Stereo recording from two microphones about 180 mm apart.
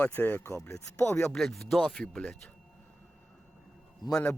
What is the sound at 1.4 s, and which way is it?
Speech, 5° left (ahead or behind).